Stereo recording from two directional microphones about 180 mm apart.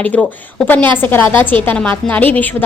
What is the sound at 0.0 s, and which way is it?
A woman's voice, 10° left (ahead or behind).